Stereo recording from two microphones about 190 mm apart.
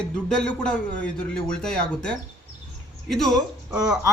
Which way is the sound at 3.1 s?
Centre (ahead or behind).